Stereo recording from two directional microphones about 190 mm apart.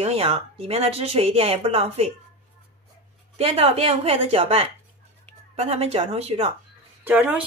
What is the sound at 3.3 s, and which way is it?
Speech, 30° right (ahead or behind).